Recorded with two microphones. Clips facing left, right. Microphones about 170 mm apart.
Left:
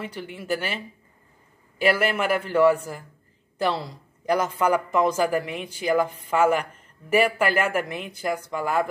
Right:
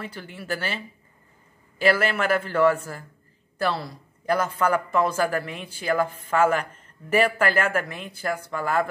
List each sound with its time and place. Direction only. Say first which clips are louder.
0.0 s speech: left 2 dB; 15° left (ahead or behind)